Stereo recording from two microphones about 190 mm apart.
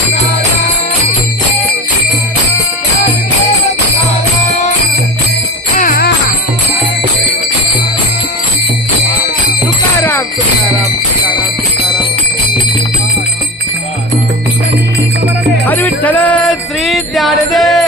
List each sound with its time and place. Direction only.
5.7 s music: 50° left (ahead or behind)
10.0 s jingle bell: 15° left (ahead or behind)
15.6 s music: 10° left (ahead or behind)